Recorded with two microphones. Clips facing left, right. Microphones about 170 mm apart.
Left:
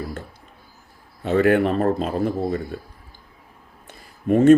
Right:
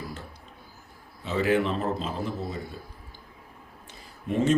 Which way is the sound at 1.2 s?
55° left (ahead or behind).